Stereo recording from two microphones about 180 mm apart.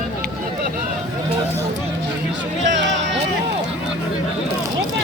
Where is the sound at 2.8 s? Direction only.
80° right.